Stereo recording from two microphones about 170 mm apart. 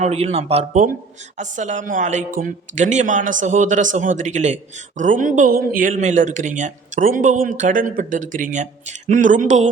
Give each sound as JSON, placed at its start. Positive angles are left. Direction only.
{"t": 0.0, "sound": "speech", "side_deg": -40}